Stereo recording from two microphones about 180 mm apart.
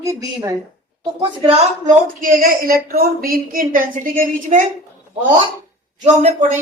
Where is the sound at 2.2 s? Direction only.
50° right (ahead or behind).